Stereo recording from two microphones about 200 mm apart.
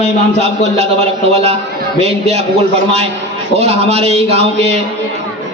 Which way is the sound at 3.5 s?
30° right (ahead or behind).